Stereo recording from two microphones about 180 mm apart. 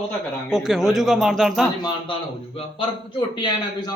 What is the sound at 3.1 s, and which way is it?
Speech, 25° left (ahead or behind).